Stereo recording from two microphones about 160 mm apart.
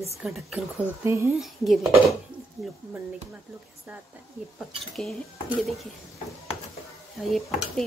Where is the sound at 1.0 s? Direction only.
15° right (ahead or behind).